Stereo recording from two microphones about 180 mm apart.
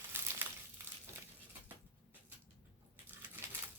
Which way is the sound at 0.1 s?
10° right (ahead or behind).